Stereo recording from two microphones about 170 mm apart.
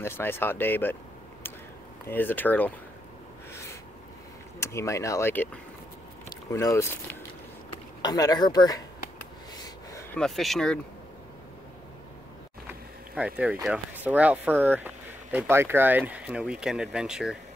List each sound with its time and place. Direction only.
0.0 s speech: 15° left (ahead or behind)
2.0 s speech: 10° left (ahead or behind)
4.6 s speech: 15° left (ahead or behind)
10.1 s speech: centre (ahead or behind)
13.1 s speech: 10° right (ahead or behind)